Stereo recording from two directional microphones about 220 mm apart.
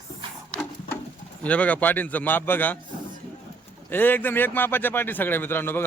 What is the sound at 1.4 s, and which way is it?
A man's voice, 5° left (ahead or behind).